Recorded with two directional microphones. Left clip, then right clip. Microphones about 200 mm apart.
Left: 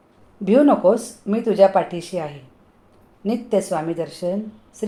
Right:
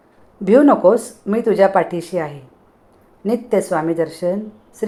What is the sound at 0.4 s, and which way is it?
A woman's voice, 20° right (ahead or behind).